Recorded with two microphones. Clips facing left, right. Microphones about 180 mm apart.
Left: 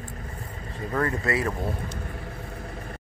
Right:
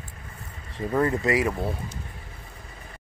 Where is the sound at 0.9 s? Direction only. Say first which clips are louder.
Right 3 dB; 20° right (ahead or behind).